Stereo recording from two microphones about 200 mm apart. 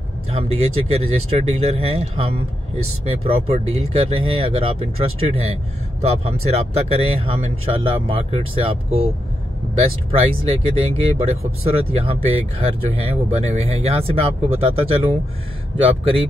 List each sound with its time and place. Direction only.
0.3 s speech: 30° right (ahead or behind)
10.1 s speech: 30° right (ahead or behind)